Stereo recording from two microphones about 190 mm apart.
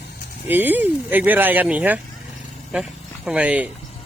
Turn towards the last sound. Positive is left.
turn(degrees=-5)  # may be behind; listen again after turning